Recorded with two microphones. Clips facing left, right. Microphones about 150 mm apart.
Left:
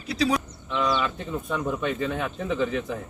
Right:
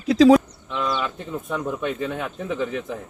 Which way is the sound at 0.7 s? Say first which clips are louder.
Left 1 dB; centre (ahead or behind).